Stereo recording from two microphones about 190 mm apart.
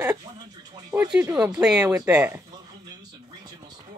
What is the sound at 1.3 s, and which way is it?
Speech, 5° right (ahead or behind).